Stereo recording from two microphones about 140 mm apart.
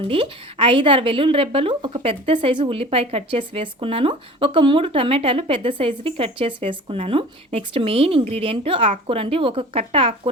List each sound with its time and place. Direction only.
0.1 s a woman's voice: 40° right (ahead or behind)